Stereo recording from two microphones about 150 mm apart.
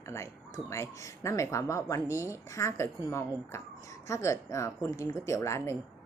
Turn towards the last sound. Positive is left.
turn(degrees=20)  # may be behind; listen again after turning